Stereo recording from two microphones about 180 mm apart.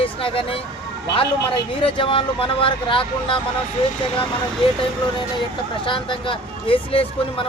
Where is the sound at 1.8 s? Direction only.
30° left (ahead or behind).